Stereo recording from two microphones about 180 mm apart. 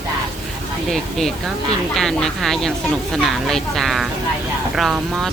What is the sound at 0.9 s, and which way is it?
Speech, centre (ahead or behind).